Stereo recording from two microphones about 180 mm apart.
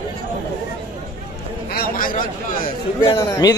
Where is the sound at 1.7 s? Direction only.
55° left (ahead or behind).